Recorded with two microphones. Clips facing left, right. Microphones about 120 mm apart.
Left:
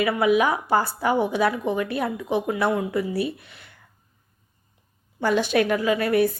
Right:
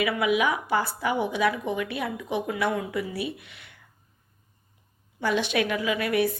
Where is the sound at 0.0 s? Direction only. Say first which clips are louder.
Left 4 dB; 40° left (ahead or behind).